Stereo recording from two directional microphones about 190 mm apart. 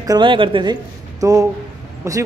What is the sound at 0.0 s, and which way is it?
A man's voice, 20° right (ahead or behind).